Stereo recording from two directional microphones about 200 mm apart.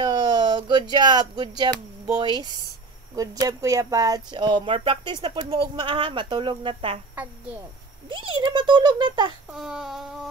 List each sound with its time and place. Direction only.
0.0 s speech: 20° right (ahead or behind)
8.1 s speech: 25° right (ahead or behind)
9.5 s speech: 5° right (ahead or behind)